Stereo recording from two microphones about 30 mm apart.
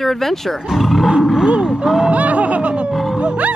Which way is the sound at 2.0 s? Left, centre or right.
Right.